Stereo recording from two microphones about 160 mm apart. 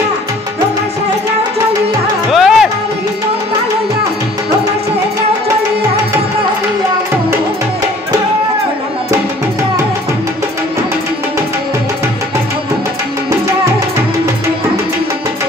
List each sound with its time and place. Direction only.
2.3 s music: centre (ahead or behind)